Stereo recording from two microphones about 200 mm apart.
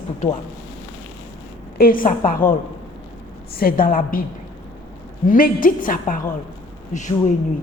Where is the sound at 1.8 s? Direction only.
45° left (ahead or behind).